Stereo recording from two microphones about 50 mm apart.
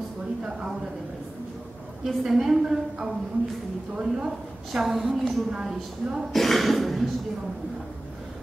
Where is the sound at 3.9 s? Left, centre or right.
Centre.